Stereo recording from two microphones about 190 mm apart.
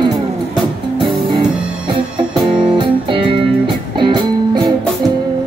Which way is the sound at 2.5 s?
25° right (ahead or behind).